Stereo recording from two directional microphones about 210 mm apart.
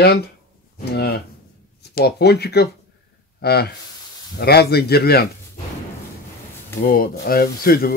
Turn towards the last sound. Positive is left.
turn(degrees=45)  # may be behind; listen again after turning